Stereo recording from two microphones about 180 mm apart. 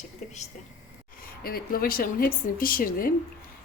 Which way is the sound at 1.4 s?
55° left (ahead or behind).